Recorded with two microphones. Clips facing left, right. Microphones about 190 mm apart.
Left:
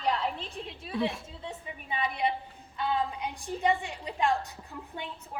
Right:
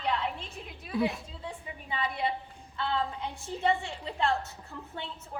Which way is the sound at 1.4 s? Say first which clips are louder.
Left 1 dB; 20° left (ahead or behind).